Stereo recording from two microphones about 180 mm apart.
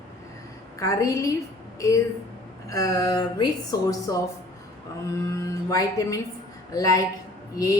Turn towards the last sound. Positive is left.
turn(degrees=20)  # may be behind; listen again after turning